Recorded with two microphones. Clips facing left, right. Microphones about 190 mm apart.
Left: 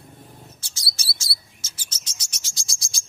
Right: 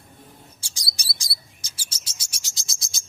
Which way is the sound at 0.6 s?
15° right (ahead or behind).